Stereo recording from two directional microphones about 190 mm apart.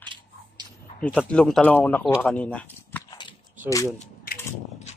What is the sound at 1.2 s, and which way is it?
A man's voice, 5° left (ahead or behind).